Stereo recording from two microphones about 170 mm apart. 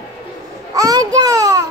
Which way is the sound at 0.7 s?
20° right (ahead or behind).